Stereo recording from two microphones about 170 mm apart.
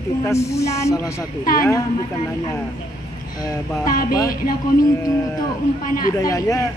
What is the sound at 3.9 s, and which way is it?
Speech, 60° left (ahead or behind).